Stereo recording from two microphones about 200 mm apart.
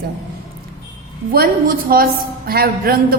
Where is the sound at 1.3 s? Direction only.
50° right (ahead or behind).